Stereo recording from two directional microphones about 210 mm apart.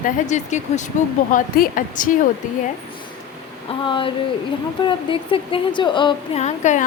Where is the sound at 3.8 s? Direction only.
25° left (ahead or behind).